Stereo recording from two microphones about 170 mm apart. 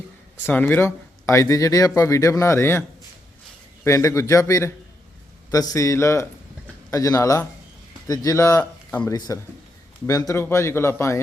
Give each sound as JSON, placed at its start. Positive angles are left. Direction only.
{"t": 0.4, "sound": "speech", "side_deg": 10}
{"t": 3.8, "sound": "speech", "side_deg": 15}